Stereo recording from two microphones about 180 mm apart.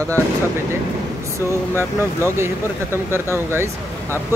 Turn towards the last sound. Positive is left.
turn(degrees=-15)  # may be behind; listen again after turning